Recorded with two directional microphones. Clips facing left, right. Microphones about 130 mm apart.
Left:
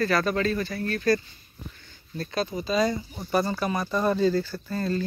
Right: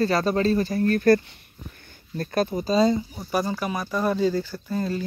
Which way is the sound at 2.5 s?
35° right (ahead or behind).